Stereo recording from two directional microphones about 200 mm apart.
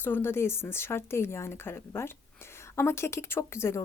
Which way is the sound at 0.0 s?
10° left (ahead or behind).